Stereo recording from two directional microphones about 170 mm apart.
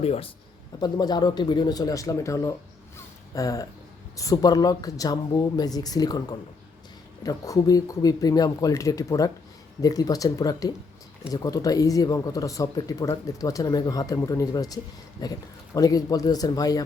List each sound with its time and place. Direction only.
0.0 s speech: 35° left (ahead or behind)
0.8 s speech: 25° left (ahead or behind)